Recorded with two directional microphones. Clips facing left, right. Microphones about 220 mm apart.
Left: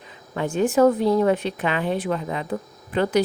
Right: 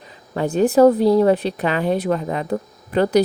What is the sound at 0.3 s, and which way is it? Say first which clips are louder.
A woman's voice: right 4 dB; 35° right (ahead or behind).